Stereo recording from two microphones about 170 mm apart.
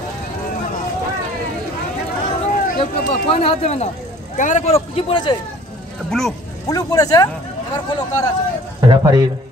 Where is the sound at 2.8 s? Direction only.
35° left (ahead or behind).